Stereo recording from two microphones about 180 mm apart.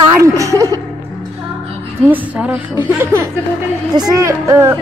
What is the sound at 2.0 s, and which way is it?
A woman's voice, 10° right (ahead or behind).